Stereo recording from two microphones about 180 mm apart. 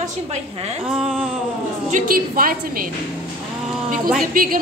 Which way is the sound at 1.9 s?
50° right (ahead or behind).